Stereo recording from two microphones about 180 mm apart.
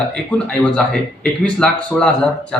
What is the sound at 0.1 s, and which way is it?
Speech, 5° left (ahead or behind).